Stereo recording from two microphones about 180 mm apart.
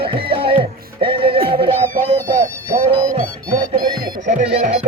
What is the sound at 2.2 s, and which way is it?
Music, 55° right (ahead or behind).